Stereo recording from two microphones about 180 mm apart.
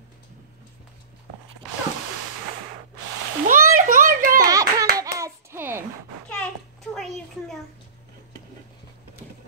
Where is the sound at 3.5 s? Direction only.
45° right (ahead or behind).